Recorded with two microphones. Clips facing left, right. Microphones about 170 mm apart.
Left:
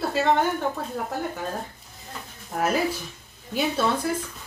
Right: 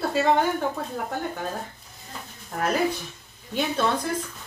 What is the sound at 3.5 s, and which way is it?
Speech, 5° left (ahead or behind).